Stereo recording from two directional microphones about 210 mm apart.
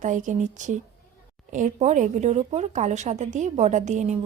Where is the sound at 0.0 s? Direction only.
35° right (ahead or behind).